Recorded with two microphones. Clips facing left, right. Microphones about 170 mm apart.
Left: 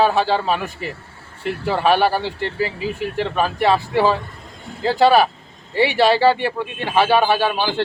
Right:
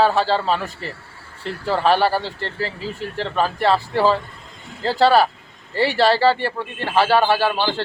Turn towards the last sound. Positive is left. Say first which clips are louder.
# even
turn(degrees=15)  # may be behind; listen again after turning